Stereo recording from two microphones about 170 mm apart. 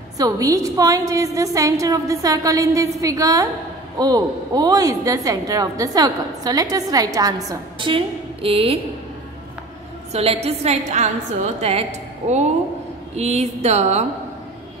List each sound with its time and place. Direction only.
0.2 s a woman's voice: 20° right (ahead or behind)
10.1 s a woman's voice: 35° right (ahead or behind)
13.1 s a woman's voice: 40° right (ahead or behind)